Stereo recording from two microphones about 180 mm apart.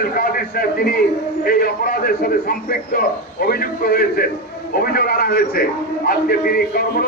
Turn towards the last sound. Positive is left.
turn(degrees=55)  # may be behind; listen again after turning